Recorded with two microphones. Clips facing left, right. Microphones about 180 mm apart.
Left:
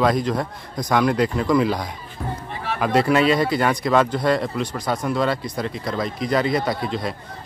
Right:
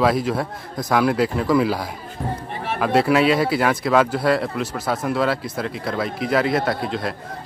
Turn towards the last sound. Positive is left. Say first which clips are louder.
# right 1 dB
turn(degrees=0)  # may be behind; listen again after turning